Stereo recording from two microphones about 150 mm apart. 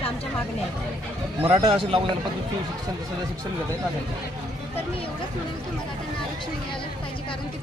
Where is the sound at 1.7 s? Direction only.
40° right (ahead or behind).